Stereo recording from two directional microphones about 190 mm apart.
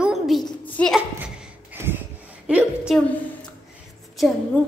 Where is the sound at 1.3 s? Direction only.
10° right (ahead or behind).